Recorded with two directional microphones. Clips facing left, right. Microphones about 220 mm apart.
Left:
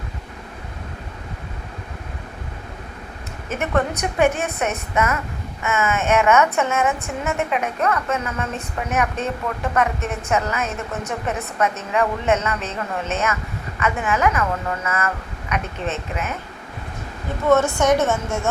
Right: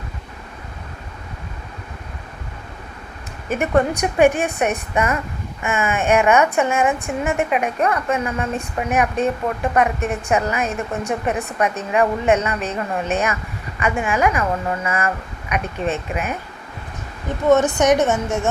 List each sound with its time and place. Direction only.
3.5 s a woman's voice: 15° right (ahead or behind)
17.5 s a woman's voice: 15° right (ahead or behind)